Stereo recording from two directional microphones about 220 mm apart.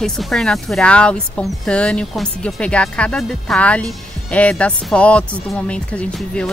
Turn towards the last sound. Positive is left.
turn(degrees=5)  # may be behind; listen again after turning